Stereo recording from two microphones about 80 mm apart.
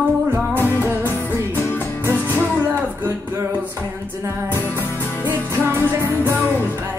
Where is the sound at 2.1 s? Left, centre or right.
Right.